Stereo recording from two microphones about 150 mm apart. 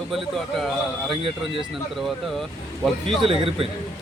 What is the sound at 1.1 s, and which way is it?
Speech, 35° right (ahead or behind).